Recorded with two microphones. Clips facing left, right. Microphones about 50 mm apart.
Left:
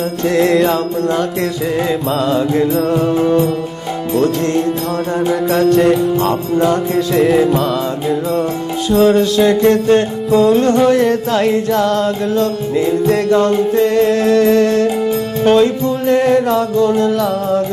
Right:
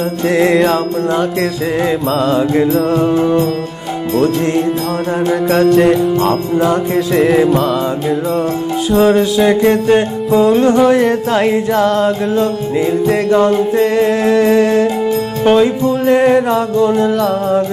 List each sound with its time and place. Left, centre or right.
0.3 s music: centre
1.9 s music: centre
5.5 s music: centre
8.9 s music: centre